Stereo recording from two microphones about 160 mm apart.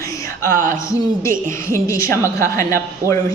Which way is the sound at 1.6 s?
20° left (ahead or behind).